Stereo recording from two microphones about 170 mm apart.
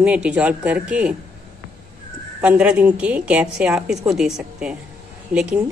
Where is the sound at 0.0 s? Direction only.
5° right (ahead or behind).